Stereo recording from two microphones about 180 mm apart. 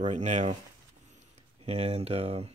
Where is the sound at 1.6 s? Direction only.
35° right (ahead or behind).